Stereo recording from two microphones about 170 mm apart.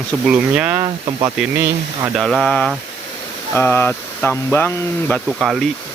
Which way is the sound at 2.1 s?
Centre (ahead or behind).